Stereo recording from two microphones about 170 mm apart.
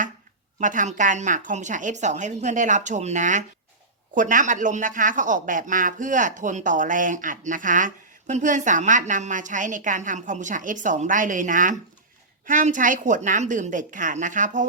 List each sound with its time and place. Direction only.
0.6 s speech: 50° right (ahead or behind)